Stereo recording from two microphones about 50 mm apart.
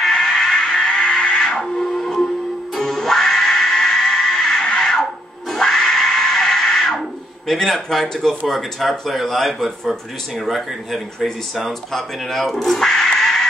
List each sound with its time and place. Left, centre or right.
0.0 s music: centre
1.6 s music: centre
5.0 s a sound: centre
8.5 s speech: centre